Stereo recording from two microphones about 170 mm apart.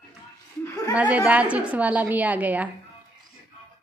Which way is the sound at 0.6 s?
15° left (ahead or behind).